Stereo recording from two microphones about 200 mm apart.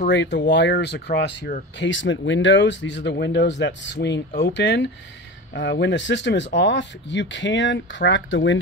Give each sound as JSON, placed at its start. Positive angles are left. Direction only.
{"t": 0.0, "sound": "speech", "side_deg": 60}